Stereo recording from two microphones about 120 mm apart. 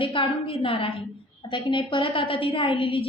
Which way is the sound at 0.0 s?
45° left (ahead or behind).